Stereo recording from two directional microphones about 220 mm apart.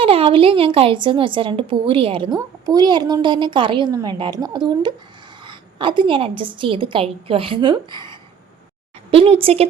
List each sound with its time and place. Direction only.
0.0 s a woman's voice: 25° right (ahead or behind)